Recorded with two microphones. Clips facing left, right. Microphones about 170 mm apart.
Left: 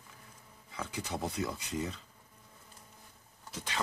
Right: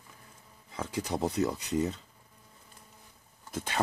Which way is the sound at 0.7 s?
35° right (ahead or behind).